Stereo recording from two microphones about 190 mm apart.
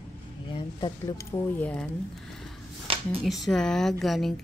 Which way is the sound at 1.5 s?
5° left (ahead or behind).